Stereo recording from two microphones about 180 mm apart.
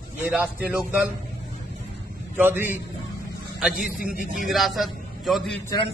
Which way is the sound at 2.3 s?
10° right (ahead or behind).